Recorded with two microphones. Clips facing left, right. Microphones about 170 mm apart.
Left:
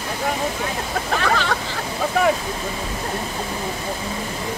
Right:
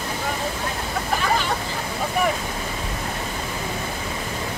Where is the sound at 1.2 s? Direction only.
80° left.